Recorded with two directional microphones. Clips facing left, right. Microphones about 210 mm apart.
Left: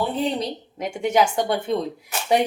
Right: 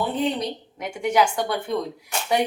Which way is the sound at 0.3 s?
25° left (ahead or behind).